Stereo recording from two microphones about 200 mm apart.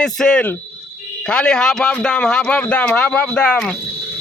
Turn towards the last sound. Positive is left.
turn(degrees=5)  # may be behind; listen again after turning